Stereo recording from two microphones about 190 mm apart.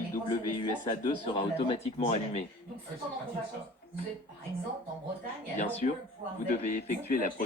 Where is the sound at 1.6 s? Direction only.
30° left (ahead or behind).